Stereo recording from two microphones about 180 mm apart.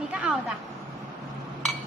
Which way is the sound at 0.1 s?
5° right (ahead or behind).